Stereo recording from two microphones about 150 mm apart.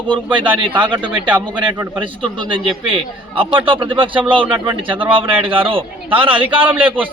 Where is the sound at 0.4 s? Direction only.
35° right (ahead or behind).